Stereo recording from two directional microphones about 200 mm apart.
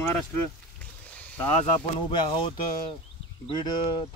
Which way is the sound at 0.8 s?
5° left (ahead or behind).